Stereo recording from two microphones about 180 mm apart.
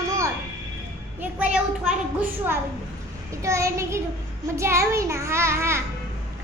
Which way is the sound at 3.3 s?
15° right (ahead or behind).